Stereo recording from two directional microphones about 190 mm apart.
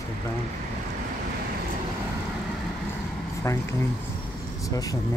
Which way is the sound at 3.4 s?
15° left (ahead or behind).